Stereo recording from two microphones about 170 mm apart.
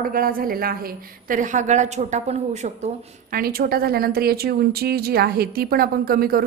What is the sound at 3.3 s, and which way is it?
A woman's voice, 60° right (ahead or behind).